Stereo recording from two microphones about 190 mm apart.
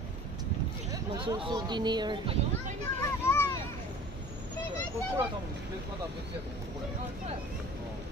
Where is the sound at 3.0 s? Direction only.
15° left (ahead or behind).